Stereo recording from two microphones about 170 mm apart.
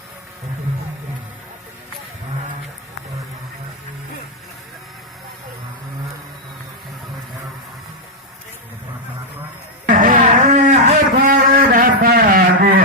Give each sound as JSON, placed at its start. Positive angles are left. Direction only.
{"t": 9.9, "sound": "cattle", "side_deg": -55}